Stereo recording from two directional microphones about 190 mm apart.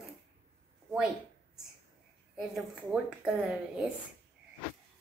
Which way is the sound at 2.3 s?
5° right (ahead or behind).